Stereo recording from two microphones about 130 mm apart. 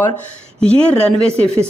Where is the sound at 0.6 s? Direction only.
10° left (ahead or behind).